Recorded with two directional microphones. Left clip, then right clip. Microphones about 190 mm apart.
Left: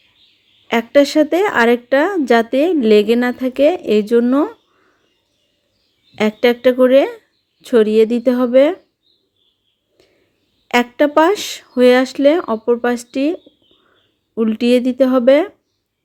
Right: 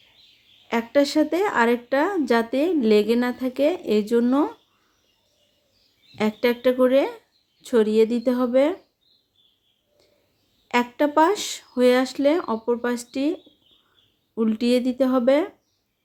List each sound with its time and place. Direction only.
0.7 s speech: 30° left (ahead or behind)
6.1 s speech: 25° left (ahead or behind)
10.7 s speech: 25° left (ahead or behind)